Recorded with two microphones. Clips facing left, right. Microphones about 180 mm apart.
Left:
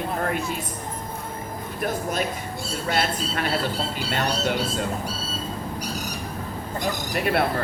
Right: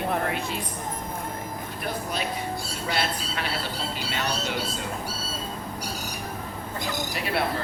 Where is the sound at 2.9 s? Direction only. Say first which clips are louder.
Left 4 dB; 50° left (ahead or behind).